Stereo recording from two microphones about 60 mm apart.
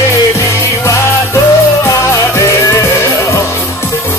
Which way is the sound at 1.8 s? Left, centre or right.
Left.